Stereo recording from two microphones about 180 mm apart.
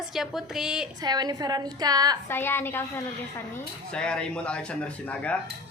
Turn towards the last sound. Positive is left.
turn(degrees=5)  # may be behind; listen again after turning